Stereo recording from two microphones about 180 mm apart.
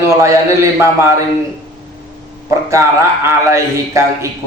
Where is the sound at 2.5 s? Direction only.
15° right (ahead or behind).